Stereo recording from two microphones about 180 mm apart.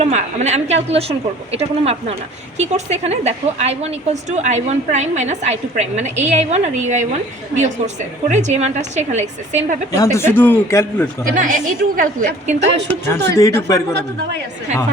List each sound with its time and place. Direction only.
0.0 s a woman's voice: 40° right (ahead or behind)
8.3 s a woman's voice: 40° right (ahead or behind)
9.9 s a man's voice: 15° left (ahead or behind)
11.3 s a woman's voice: 45° right (ahead or behind)
12.5 s speech: 70° right (ahead or behind)
13.2 s a man's voice: 15° left (ahead or behind)